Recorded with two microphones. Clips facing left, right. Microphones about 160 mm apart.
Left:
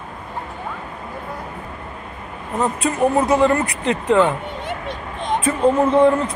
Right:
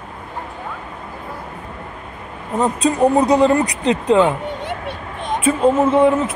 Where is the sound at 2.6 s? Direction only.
15° right (ahead or behind).